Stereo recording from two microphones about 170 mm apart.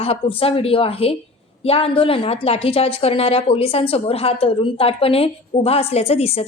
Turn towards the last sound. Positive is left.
turn(degrees=35)  # may be behind; listen again after turning